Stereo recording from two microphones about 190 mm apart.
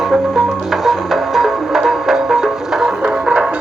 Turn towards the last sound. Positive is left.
turn(degrees=-5)  # may be behind; listen again after turning